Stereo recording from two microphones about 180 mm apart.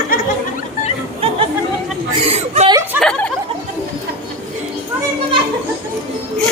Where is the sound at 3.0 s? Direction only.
5° left (ahead or behind).